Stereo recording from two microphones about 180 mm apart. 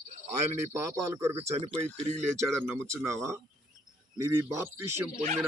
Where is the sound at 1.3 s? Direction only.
35° right (ahead or behind).